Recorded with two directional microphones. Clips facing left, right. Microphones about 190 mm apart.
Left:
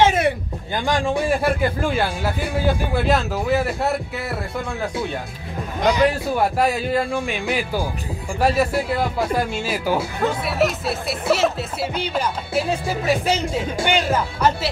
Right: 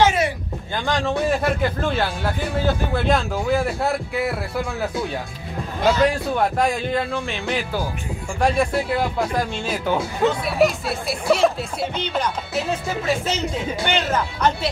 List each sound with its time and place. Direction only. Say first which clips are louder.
0.7 s a man's voice: left 1 dB; 15° left (ahead or behind)
5.8 s a man's voice: even; 15° left (ahead or behind)